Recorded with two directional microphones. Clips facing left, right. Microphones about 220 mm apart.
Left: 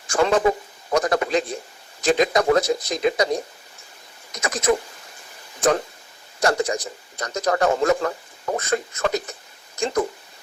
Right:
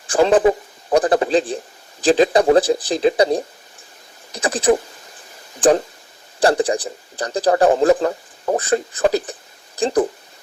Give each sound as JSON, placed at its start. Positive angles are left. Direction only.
{"t": 0.1, "sound": "a man's voice", "side_deg": -30}